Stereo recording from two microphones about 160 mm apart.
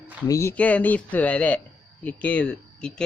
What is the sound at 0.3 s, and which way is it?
Speech, 15° left (ahead or behind).